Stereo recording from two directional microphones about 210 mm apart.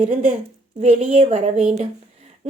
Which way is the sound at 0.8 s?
30° right (ahead or behind).